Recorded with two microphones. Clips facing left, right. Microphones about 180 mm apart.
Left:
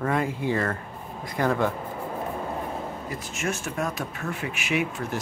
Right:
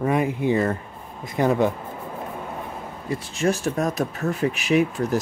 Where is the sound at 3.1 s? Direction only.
30° right (ahead or behind).